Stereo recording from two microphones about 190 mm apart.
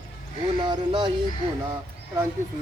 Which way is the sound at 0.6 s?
25° right (ahead or behind).